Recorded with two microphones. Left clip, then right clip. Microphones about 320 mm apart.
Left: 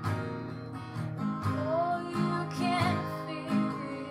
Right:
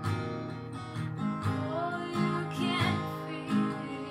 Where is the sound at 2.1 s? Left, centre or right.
Centre.